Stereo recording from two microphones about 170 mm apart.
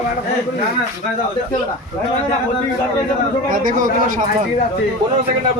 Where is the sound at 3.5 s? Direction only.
50° right (ahead or behind).